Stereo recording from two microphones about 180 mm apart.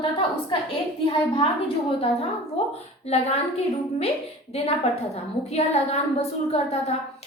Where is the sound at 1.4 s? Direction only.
30° left (ahead or behind).